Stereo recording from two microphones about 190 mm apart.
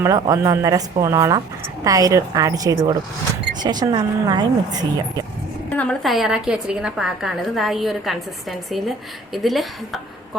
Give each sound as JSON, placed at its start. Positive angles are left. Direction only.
{"t": 0.0, "sound": "speech", "side_deg": -15}
{"t": 5.7, "sound": "a woman's voice", "side_deg": 5}